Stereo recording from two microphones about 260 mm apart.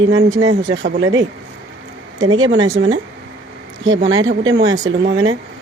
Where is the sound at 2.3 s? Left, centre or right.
Right.